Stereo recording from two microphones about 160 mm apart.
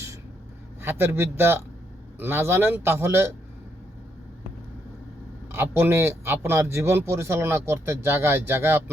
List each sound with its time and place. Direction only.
0.8 s a man's voice: 15° right (ahead or behind)
5.5 s a man's voice: 15° right (ahead or behind)